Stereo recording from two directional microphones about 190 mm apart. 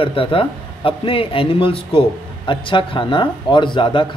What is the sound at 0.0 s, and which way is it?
Speech, 30° left (ahead or behind).